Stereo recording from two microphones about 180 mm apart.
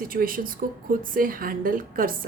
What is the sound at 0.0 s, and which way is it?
A woman's voice, 55° right (ahead or behind).